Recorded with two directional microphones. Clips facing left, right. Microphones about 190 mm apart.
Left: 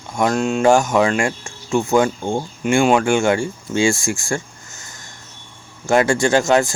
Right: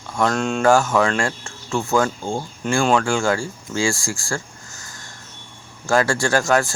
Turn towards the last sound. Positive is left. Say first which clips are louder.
# left 3 dB
turn(degrees=20)  # may be behind; listen again after turning